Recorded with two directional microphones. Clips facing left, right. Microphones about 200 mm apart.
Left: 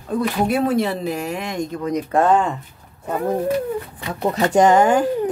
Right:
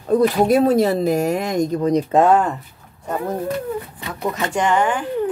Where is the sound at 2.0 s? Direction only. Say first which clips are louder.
Right 1 dB; 20° right (ahead or behind).